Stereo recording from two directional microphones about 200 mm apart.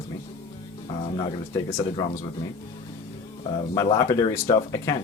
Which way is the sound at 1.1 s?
20° left (ahead or behind).